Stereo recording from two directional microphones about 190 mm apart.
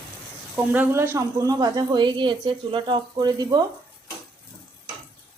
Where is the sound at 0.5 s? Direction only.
10° right (ahead or behind).